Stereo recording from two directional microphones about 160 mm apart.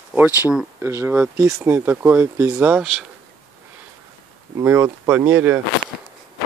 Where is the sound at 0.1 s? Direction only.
10° right (ahead or behind).